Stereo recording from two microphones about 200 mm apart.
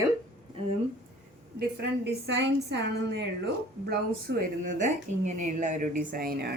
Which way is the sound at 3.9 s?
45° right (ahead or behind).